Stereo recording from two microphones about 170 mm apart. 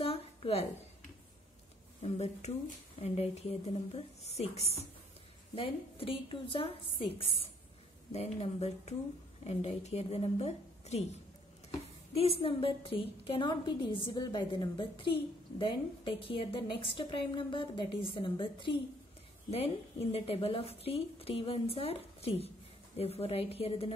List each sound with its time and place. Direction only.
0.0 s a sound: 35° left (ahead or behind)
2.0 s a woman's voice: 35° left (ahead or behind)
12.2 s a woman's voice: 35° left (ahead or behind)